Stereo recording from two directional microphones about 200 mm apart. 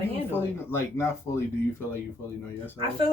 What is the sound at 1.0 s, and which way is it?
Speech, 15° left (ahead or behind).